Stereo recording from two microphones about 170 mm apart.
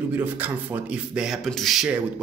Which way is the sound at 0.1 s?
10° right (ahead or behind).